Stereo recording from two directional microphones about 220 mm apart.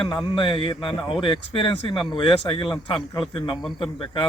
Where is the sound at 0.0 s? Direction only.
20° left (ahead or behind).